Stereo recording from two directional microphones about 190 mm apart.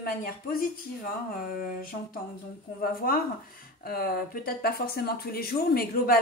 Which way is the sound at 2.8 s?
50° left (ahead or behind).